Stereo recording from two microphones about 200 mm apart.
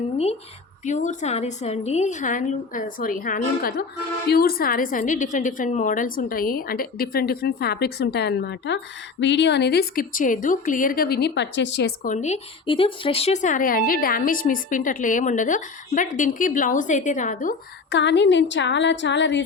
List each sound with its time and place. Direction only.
0.9 s a woman's voice: 35° left (ahead or behind); by 11.9 s 60° left (ahead or behind)
12.0 s speech: 35° left (ahead or behind)
17.9 s a woman's voice: 60° left (ahead or behind)